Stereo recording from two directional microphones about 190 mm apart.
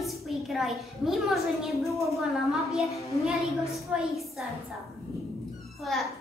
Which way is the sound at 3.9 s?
Centre (ahead or behind).